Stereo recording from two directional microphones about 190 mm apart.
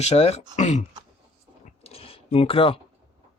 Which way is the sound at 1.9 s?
30° left (ahead or behind).